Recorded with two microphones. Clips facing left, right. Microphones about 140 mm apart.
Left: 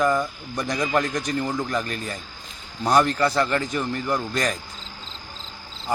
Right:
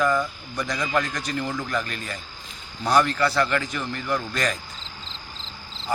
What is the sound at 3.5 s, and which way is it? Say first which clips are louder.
A man's voice: left 2 dB; 35° left (ahead or behind).